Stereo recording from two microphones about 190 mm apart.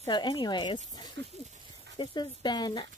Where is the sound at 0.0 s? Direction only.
20° left (ahead or behind).